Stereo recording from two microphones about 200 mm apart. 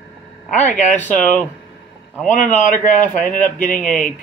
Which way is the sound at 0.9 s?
10° left (ahead or behind).